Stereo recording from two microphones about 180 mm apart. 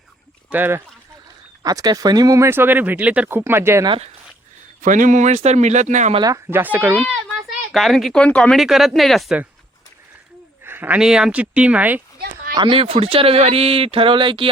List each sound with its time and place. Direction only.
0.5 s speech: 10° right (ahead or behind)
1.6 s speech: 20° right (ahead or behind)
3.8 s speech: 30° right (ahead or behind)
4.8 s speech: 45° right (ahead or behind)
6.1 s speech: 20° right (ahead or behind)
6.9 s speech: 5° left (ahead or behind)
10.6 s speech: 10° right (ahead or behind)
12.5 s speech: 30° right (ahead or behind)